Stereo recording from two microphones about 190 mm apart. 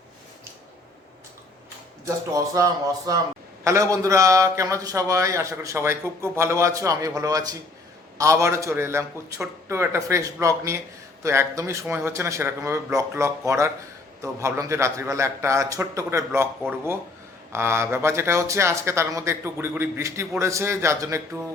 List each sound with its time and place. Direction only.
2.0 s a man's voice: 15° right (ahead or behind)